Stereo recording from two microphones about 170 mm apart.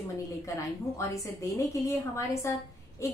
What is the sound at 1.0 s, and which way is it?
A woman's voice, 15° left (ahead or behind).